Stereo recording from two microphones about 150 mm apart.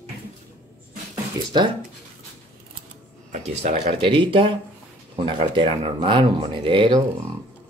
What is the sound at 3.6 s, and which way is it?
Speech, 45° right (ahead or behind).